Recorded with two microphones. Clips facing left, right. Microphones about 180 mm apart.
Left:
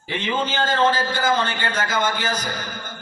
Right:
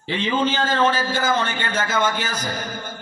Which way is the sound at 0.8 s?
25° right (ahead or behind).